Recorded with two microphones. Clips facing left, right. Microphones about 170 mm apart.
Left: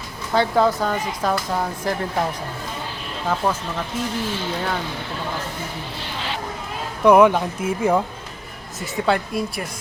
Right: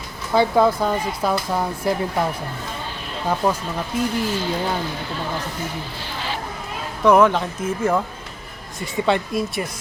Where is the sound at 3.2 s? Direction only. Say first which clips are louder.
Right 1 dB; 10° right (ahead or behind).